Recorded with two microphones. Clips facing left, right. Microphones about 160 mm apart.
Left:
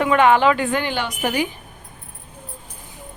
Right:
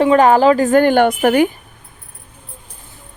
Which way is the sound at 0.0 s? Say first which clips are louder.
Right 5 dB; 35° right (ahead or behind).